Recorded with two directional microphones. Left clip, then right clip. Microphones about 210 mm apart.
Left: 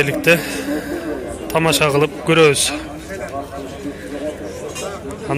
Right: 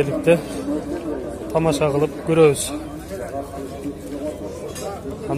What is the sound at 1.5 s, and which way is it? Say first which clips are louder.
Speech: left 4 dB; centre (ahead or behind).